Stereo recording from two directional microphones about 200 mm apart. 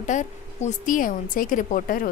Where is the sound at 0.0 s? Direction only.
40° left (ahead or behind).